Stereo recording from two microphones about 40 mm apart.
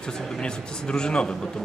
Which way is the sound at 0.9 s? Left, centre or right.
Left.